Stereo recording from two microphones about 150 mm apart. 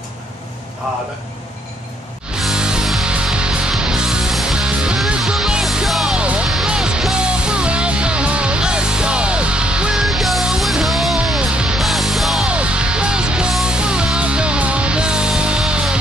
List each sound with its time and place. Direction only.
2.4 s music: 5° right (ahead or behind)